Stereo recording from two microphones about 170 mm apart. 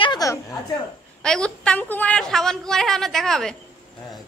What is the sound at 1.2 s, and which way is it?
A woman's voice, 5° left (ahead or behind).